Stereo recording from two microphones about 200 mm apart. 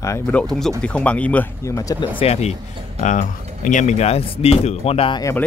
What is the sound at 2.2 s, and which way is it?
Speech, 30° left (ahead or behind).